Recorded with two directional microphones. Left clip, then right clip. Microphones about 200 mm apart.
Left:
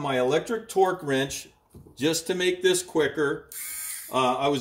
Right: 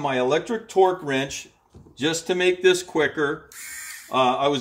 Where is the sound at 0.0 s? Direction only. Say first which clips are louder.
Right 2 dB; 10° right (ahead or behind).